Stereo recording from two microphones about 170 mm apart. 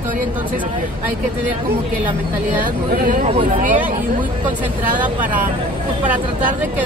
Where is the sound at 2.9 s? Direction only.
55° right (ahead or behind).